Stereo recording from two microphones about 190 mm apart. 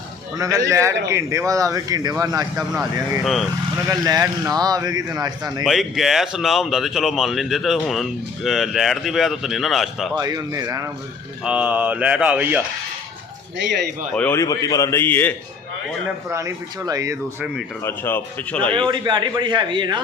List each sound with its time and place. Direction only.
0.3 s speech: 20° right (ahead or behind)
2.7 s speech: centre (ahead or behind)
3.8 s speech: 20° right (ahead or behind)
5.6 s speech: centre (ahead or behind)
10.2 s speech: 20° right (ahead or behind)
11.4 s speech: 5° right (ahead or behind)
14.1 s speech: 5° left (ahead or behind)
16.3 s speech: 15° right (ahead or behind)
17.4 s speech: 5° right (ahead or behind)
17.8 s speech: 10° left (ahead or behind)
18.9 s speech: 25° right (ahead or behind)